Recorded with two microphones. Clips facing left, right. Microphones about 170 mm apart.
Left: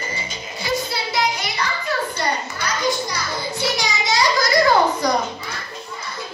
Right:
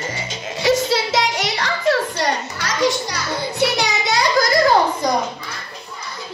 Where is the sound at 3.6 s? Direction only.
65° right (ahead or behind).